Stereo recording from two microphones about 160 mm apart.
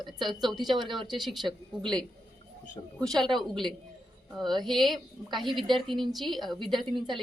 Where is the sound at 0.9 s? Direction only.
Centre (ahead or behind).